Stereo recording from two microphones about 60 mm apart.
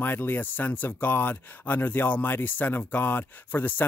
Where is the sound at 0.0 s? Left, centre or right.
Left.